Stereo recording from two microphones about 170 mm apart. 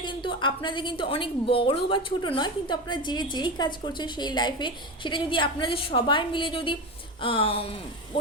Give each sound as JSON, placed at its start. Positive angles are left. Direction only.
{"t": 0.0, "sound": "a woman's voice", "side_deg": 30}